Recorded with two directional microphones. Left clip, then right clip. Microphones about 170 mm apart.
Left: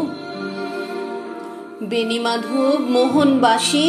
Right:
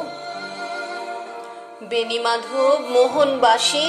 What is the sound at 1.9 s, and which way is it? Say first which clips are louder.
Music: even; 10° right (ahead or behind).